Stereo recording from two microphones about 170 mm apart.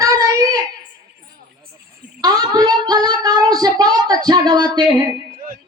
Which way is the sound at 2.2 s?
20° right (ahead or behind).